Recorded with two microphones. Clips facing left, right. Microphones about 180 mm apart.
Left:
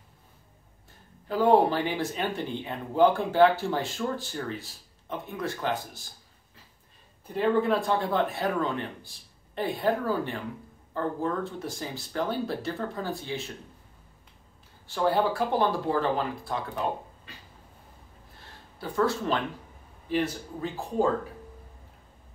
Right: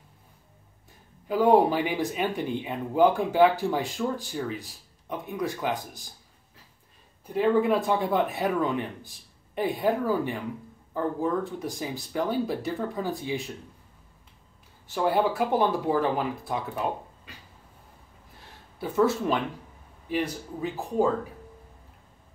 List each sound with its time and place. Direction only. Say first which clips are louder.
1.2 s speech: right 1 dB; 10° right (ahead or behind)
7.3 s speech: right 2 dB; 10° right (ahead or behind)
15.0 s speech: right 1 dB; 15° right (ahead or behind)
18.8 s speech: right 3 dB; 20° right (ahead or behind)